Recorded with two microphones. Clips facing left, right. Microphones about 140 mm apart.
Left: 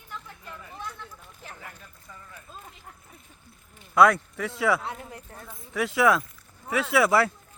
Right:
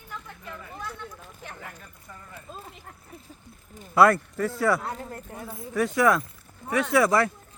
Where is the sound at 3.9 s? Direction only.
5° right (ahead or behind).